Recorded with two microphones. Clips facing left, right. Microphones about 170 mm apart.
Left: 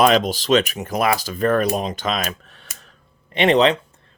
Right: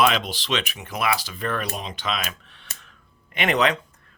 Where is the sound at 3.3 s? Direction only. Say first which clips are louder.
Left 6 dB; 30° left (ahead or behind).